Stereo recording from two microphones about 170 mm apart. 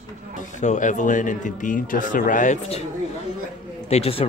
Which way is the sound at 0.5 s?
45° left (ahead or behind).